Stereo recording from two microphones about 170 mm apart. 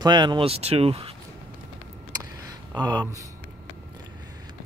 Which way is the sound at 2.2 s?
20° right (ahead or behind).